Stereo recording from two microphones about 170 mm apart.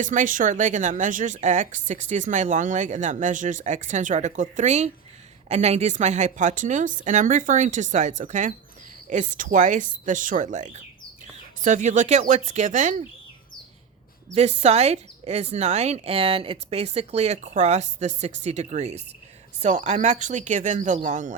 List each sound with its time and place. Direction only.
0.0 s speech: 50° right (ahead or behind)
14.3 s speech: 40° right (ahead or behind)